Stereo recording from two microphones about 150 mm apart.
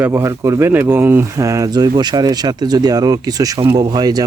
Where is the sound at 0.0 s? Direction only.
20° right (ahead or behind).